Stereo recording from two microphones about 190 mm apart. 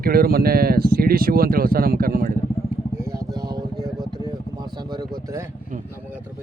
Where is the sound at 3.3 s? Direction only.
20° right (ahead or behind).